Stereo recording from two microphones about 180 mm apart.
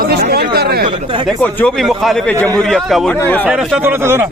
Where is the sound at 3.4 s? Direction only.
10° right (ahead or behind).